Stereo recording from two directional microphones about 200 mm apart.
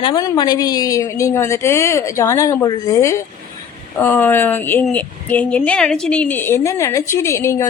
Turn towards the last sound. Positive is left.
turn(degrees=15)  # may be behind; listen again after turning